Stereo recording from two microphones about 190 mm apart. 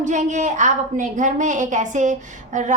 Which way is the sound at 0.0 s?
40° right (ahead or behind).